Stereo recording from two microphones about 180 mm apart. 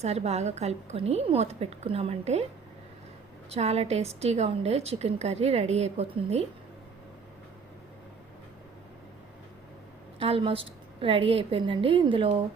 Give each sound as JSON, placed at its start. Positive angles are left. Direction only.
{"t": 0.0, "sound": "a woman's voice", "side_deg": -35}
{"t": 3.5, "sound": "a woman's voice", "side_deg": -35}
{"t": 10.2, "sound": "a woman's voice", "side_deg": -30}